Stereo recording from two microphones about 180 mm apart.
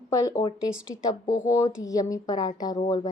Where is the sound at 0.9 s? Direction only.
20° left (ahead or behind).